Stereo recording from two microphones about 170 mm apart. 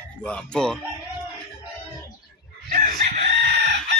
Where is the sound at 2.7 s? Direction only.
50° right (ahead or behind).